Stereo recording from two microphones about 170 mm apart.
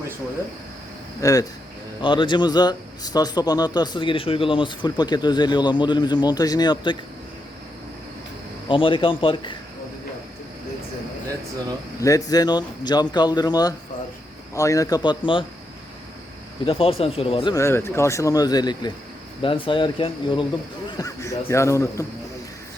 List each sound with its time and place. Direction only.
1.2 s a man's voice: 20° left (ahead or behind)
8.7 s a man's voice: 30° left (ahead or behind)
11.9 s a man's voice: 20° left (ahead or behind)
16.6 s speech: 35° left (ahead or behind)
17.5 s a man's voice: 15° left (ahead or behind)
21.0 s speech: 20° left (ahead or behind)